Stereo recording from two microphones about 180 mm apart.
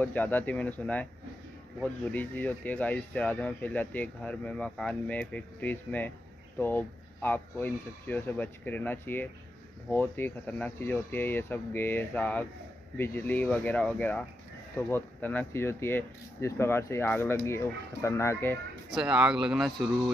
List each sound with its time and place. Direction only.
0.0 s speech: 10° left (ahead or behind)
18.9 s speech: 5° right (ahead or behind)